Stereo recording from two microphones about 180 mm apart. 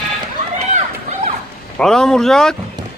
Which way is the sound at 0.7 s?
40° right (ahead or behind).